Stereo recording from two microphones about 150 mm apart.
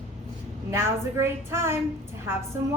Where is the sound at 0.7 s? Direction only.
15° right (ahead or behind).